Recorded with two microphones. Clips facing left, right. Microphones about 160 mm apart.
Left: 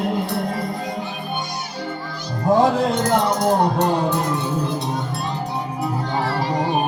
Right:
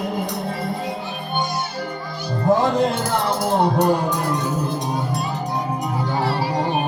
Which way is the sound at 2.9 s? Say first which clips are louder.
Left 3 dB; 5° right (ahead or behind).